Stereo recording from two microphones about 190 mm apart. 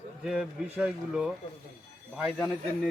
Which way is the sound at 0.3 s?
5° right (ahead or behind).